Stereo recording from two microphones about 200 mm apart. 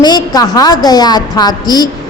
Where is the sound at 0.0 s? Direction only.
20° left (ahead or behind).